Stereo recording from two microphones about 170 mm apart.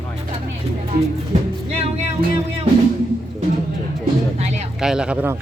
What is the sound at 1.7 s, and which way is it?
Music, 35° right (ahead or behind).